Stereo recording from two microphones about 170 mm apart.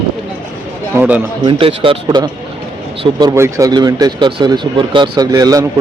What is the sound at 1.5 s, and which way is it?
Speech, 30° right (ahead or behind).